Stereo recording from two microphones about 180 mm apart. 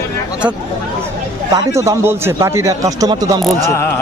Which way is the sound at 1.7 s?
15° right (ahead or behind).